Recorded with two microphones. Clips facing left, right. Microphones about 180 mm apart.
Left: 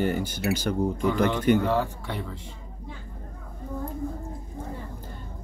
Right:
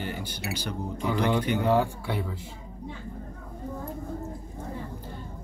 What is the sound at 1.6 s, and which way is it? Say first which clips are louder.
Speech: right 2 dB; 10° right (ahead or behind).